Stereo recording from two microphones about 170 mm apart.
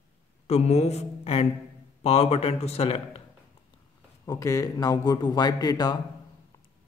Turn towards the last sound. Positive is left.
turn(degrees=25)  # may be behind; listen again after turning